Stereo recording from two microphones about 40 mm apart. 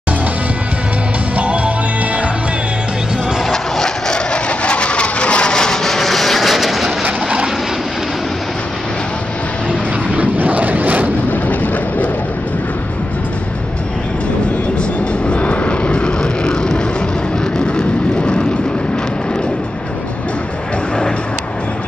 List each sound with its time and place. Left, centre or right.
1.3 s music: right
3.5 s vehicle: centre
4.3 s a sound: left
5.5 s vehicle: centre
10.1 s vehicle: right
11.2 s vehicle: left
15.2 s vehicle: left